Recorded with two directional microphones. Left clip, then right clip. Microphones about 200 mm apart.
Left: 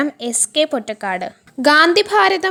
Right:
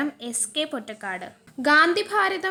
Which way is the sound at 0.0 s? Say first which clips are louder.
Left 9 dB; 30° left (ahead or behind).